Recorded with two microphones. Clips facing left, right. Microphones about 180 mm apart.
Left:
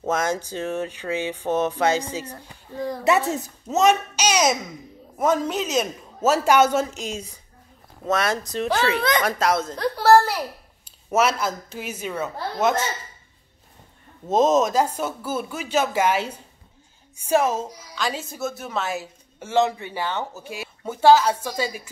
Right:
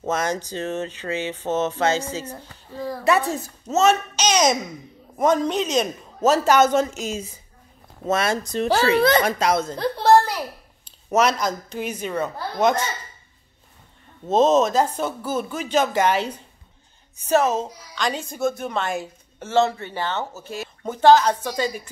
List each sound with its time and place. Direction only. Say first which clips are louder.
0.0 s a child's voice: even; 10° left (ahead or behind)
8.6 s a woman's voice: right 4 dB; 35° right (ahead or behind)
9.2 s a woman's voice: right 1 dB; centre (ahead or behind)
11.1 s a woman's voice: right 1 dB; 5° left (ahead or behind)
14.2 s a woman's voice: right 1 dB; 10° left (ahead or behind)